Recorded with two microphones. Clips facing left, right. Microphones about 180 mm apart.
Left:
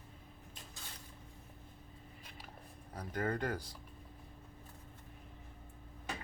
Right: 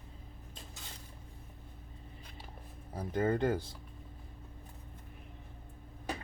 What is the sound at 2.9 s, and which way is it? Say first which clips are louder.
Speech: right 6 dB; 25° right (ahead or behind).